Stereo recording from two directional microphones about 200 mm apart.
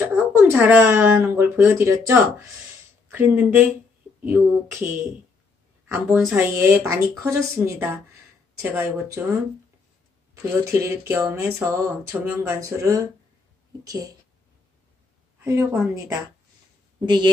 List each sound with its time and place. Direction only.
0.1 s speech: 10° right (ahead or behind)
5.9 s speech: 10° right (ahead or behind)
10.3 s speech: 15° right (ahead or behind)
15.4 s speech: 15° right (ahead or behind)
17.0 s a woman's voice: 20° right (ahead or behind)